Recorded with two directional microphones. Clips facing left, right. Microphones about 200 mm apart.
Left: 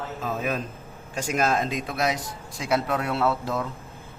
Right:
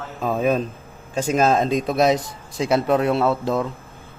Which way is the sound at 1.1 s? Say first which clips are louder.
Right 6 dB; 25° right (ahead or behind).